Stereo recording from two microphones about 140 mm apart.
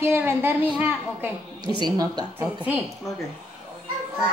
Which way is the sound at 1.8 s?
30° right (ahead or behind).